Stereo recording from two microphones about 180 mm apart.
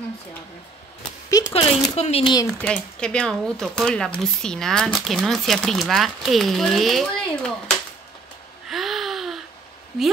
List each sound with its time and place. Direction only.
1.4 s speech: 35° left (ahead or behind)
2.4 s speech: 5° left (ahead or behind)
8.6 s a sound: centre (ahead or behind)